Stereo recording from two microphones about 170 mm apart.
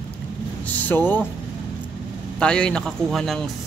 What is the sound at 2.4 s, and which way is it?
Speech, 5° left (ahead or behind).